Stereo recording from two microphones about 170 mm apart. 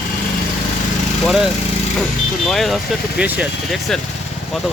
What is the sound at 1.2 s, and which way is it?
Speech, 5° right (ahead or behind).